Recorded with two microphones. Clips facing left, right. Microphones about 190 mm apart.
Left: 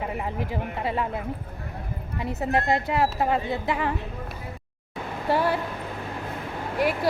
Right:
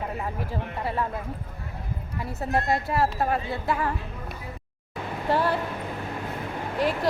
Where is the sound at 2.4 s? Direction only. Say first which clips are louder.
Left 1 dB; 20° left (ahead or behind).